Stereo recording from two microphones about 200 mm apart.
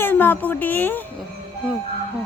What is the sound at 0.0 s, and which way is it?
Speech, 10° left (ahead or behind).